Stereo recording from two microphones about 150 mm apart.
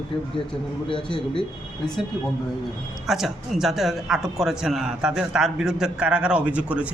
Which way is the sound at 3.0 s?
Centre (ahead or behind).